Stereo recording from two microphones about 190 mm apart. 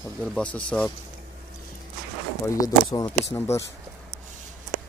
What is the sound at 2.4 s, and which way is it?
Speech, 20° left (ahead or behind).